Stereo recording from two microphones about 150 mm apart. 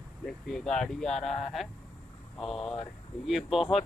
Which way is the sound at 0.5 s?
5° left (ahead or behind).